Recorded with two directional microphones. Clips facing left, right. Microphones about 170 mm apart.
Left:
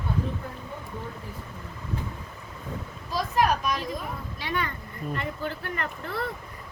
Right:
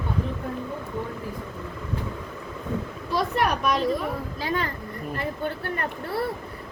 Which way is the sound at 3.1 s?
65° right (ahead or behind).